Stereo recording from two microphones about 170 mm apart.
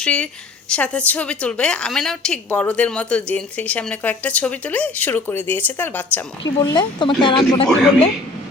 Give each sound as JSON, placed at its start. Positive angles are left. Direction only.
{"t": 0.0, "sound": "a woman's voice", "side_deg": 5}
{"t": 6.6, "sound": "a woman's voice", "side_deg": 25}